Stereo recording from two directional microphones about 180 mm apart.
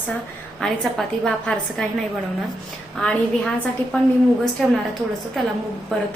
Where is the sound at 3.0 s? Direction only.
5° left (ahead or behind).